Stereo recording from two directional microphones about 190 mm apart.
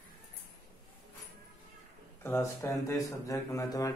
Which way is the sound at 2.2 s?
15° left (ahead or behind).